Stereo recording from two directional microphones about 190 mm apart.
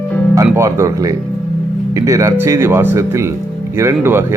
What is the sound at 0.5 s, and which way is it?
Speech, 15° right (ahead or behind).